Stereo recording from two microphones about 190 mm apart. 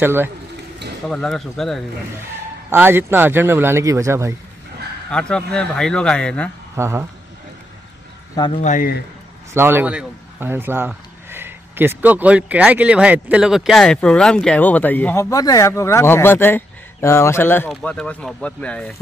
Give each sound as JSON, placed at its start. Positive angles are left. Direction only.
{"t": 0.0, "sound": "speech", "side_deg": -10}
{"t": 1.0, "sound": "a man's voice", "side_deg": 5}
{"t": 2.7, "sound": "speech", "side_deg": -10}
{"t": 5.1, "sound": "a man's voice", "side_deg": 5}
{"t": 6.8, "sound": "speech", "side_deg": -15}
{"t": 8.5, "sound": "speech", "side_deg": 45}
{"t": 9.5, "sound": "a man's voice", "side_deg": -10}